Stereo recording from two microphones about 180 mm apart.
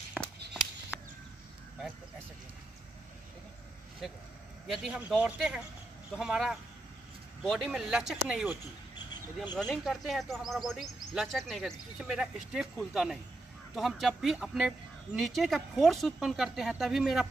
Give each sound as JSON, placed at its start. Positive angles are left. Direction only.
{"t": 0.1, "sound": "a sound", "side_deg": 0}
{"t": 4.6, "sound": "speech", "side_deg": 0}
{"t": 9.7, "sound": "speech", "side_deg": 0}